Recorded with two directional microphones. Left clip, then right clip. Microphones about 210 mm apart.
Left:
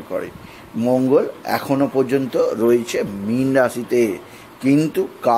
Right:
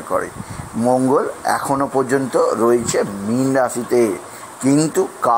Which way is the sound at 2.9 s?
30° left (ahead or behind).